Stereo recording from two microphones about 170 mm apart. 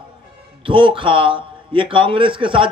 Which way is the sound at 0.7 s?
30° right (ahead or behind).